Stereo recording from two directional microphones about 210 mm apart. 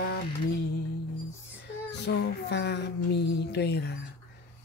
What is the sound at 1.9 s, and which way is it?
Music, 55° left (ahead or behind).